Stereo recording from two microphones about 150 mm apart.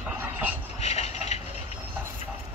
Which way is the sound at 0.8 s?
45° left (ahead or behind).